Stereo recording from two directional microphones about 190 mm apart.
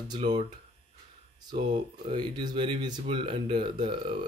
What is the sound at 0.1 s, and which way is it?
Speech, 25° right (ahead or behind).